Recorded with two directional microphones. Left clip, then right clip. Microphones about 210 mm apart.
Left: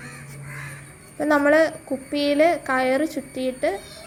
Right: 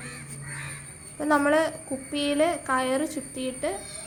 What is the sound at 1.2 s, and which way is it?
A woman's voice, 15° left (ahead or behind).